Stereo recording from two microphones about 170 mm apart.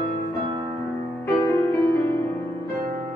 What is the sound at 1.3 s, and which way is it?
Music, 15° left (ahead or behind).